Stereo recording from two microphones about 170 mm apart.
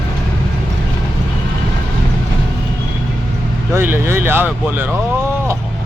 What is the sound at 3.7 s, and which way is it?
Speech, 15° right (ahead or behind).